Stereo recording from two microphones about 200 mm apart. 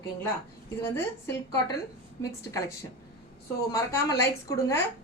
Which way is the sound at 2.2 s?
15° left (ahead or behind).